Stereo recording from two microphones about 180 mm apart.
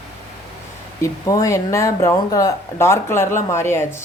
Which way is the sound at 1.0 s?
20° left (ahead or behind).